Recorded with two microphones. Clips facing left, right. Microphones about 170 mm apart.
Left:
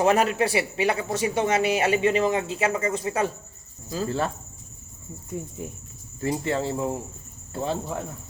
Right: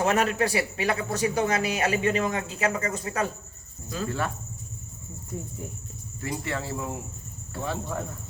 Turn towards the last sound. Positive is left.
turn(degrees=25)  # may be behind; listen again after turning